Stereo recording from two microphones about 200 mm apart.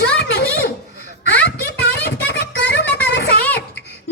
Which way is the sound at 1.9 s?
55° left (ahead or behind).